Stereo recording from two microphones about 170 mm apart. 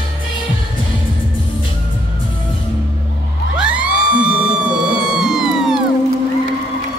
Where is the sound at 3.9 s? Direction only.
65° left (ahead or behind).